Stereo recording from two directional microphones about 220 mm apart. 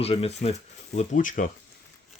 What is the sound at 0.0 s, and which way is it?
Speech, 25° left (ahead or behind).